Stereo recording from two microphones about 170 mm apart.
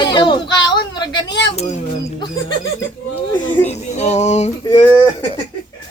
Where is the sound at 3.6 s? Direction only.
40° left (ahead or behind).